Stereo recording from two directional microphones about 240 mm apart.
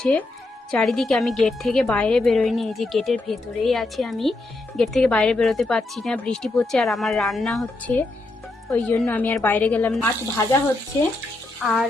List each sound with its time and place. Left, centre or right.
0.0 s a woman's voice: centre
11.6 s a woman's voice: centre